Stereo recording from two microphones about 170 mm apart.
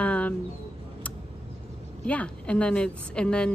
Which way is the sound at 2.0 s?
5° left (ahead or behind).